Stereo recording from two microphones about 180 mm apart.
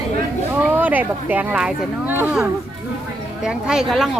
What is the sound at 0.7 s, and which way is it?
A woman's voice, 10° right (ahead or behind).